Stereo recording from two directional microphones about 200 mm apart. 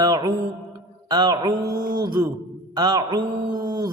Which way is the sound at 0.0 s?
20° right (ahead or behind).